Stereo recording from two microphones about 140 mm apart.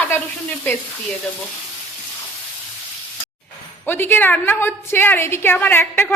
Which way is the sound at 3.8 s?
15° left (ahead or behind).